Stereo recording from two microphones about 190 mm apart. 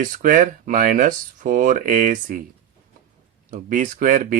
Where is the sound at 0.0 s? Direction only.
45° right (ahead or behind).